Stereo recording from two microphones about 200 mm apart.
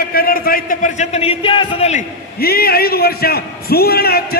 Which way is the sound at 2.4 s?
50° left (ahead or behind).